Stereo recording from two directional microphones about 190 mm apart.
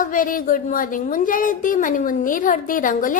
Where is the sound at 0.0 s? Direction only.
45° left (ahead or behind).